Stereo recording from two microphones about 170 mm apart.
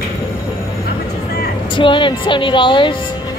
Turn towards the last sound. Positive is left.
turn(degrees=30)  # may be behind; listen again after turning